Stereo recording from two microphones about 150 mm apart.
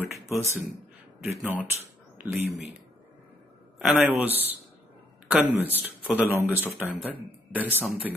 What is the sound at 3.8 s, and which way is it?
Speech, centre (ahead or behind).